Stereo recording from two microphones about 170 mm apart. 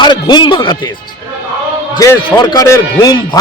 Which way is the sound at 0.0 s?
25° left (ahead or behind).